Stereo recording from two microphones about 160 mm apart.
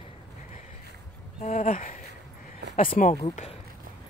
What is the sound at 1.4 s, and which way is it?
Speech, 50° left (ahead or behind).